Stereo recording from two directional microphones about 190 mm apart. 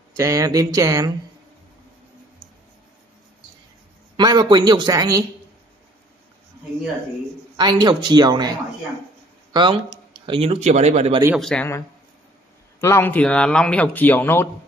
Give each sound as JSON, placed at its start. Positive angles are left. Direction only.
{"t": 0.1, "sound": "speech", "side_deg": -15}
{"t": 4.2, "sound": "speech", "side_deg": -20}
{"t": 7.5, "sound": "speech", "side_deg": -20}
{"t": 11.3, "sound": "speech", "side_deg": 5}
{"t": 12.8, "sound": "speech", "side_deg": 10}